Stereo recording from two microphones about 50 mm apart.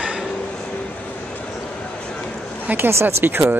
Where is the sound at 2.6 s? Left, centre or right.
Right.